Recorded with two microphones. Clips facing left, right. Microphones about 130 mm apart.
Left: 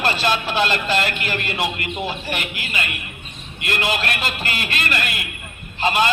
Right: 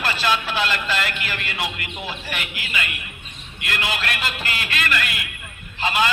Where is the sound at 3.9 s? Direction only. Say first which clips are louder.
Left 3 dB; 25° left (ahead or behind).